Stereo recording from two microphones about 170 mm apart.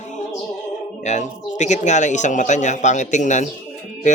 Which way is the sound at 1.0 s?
45° left (ahead or behind).